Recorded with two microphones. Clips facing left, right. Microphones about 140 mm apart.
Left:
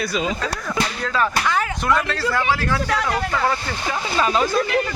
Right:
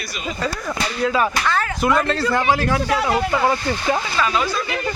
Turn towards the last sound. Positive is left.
turn(degrees=40)  # may be behind; listen again after turning